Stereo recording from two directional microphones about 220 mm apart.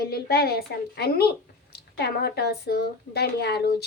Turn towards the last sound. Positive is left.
turn(degrees=45)  # may be behind; listen again after turning